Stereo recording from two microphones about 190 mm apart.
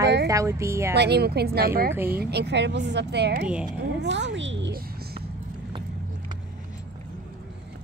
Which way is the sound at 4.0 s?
70° right (ahead or behind).